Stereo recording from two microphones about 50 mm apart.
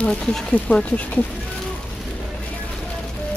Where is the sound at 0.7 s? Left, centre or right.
Left.